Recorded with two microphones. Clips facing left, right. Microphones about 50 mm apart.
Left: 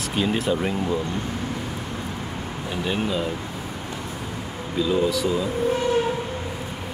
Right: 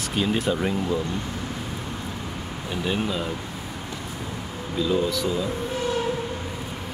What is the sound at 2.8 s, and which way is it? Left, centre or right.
Speech, centre.